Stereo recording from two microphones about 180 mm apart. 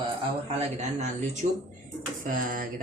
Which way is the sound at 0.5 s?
40° right (ahead or behind).